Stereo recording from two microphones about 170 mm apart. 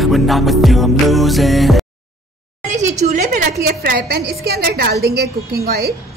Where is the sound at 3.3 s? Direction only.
65° right (ahead or behind).